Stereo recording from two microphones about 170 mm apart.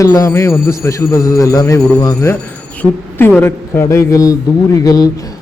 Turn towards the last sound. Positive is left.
turn(degrees=20)  # may be behind; listen again after turning